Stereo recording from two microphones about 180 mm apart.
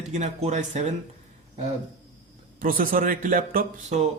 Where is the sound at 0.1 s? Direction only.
40° right (ahead or behind).